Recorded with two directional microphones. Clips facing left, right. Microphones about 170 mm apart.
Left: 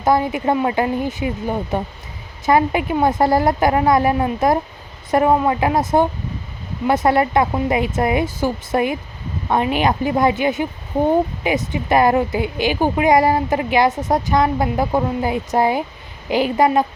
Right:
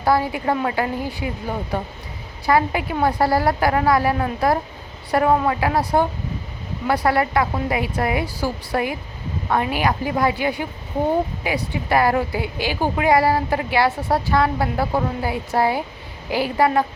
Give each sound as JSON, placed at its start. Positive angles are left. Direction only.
{"t": 0.0, "sound": "a woman's voice", "side_deg": 20}